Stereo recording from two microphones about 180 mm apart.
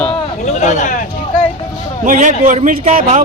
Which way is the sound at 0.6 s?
40° left (ahead or behind).